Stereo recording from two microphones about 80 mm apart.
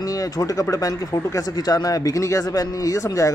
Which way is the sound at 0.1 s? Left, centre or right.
Left.